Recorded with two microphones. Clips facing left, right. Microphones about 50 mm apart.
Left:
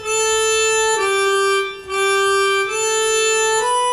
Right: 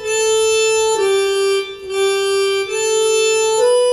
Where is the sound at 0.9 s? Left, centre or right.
Left.